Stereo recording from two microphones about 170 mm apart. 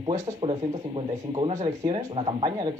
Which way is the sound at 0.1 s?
40° right (ahead or behind).